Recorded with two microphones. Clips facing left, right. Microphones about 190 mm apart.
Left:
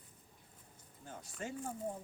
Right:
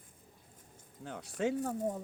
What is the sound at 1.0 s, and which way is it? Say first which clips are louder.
Speech: right 11 dB; 75° right (ahead or behind).